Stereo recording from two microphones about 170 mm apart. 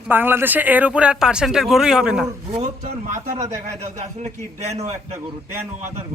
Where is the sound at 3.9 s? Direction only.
40° right (ahead or behind).